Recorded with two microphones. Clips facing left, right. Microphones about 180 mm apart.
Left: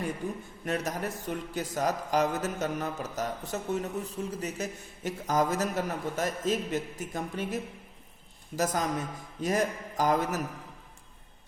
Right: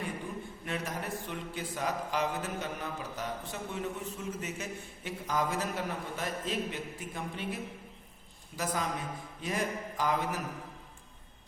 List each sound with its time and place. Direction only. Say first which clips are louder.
0.2 s a man's voice: left 5 dB; 45° left (ahead or behind)